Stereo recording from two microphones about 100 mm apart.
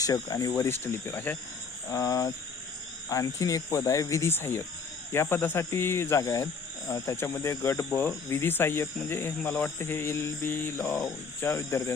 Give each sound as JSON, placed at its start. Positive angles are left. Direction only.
{"t": 0.0, "sound": "speech", "side_deg": 35}
{"t": 0.7, "sound": "speech", "side_deg": 20}
{"t": 1.9, "sound": "speech", "side_deg": 30}
{"t": 10.8, "sound": "speech", "side_deg": 0}
{"t": 11.3, "sound": "speech", "side_deg": 25}